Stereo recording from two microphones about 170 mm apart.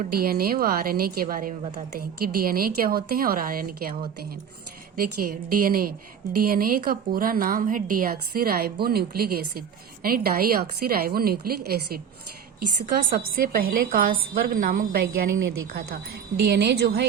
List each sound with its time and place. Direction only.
0.1 s a woman's voice: 60° right (ahead or behind)
4.9 s a woman's voice: 60° right (ahead or behind)